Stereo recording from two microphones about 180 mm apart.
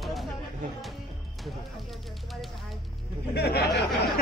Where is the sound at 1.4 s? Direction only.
Centre (ahead or behind).